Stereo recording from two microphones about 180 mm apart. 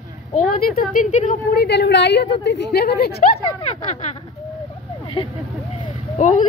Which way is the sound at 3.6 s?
35° left (ahead or behind).